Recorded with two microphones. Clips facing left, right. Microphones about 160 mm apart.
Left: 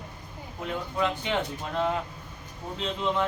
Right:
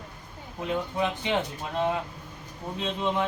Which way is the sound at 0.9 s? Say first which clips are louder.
Left 2 dB; 20° right (ahead or behind).